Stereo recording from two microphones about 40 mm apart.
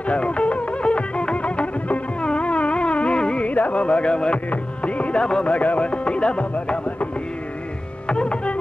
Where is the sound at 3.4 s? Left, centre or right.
Left.